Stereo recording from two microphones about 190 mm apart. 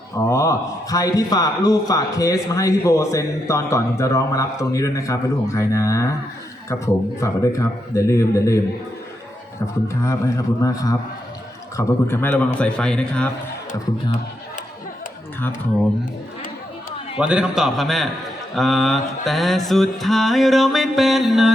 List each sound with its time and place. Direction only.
0.3 s a man's voice: 15° left (ahead or behind)
9.9 s a man's voice: 15° left (ahead or behind)
12.5 s mantra: 5° left (ahead or behind)
17.2 s mantra: 5° right (ahead or behind)